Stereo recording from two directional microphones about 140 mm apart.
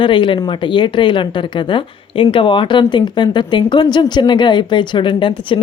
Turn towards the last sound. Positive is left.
turn(degrees=35)  # may be behind; listen again after turning